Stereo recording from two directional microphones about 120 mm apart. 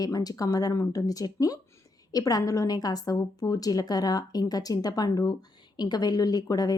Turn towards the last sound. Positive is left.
turn(degrees=30)  # may be behind; listen again after turning